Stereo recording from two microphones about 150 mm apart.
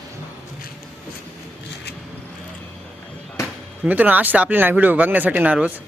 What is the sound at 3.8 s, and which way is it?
Speech, 10° right (ahead or behind).